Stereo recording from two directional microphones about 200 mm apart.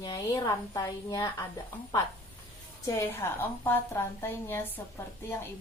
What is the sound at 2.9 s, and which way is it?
Speech, 15° left (ahead or behind).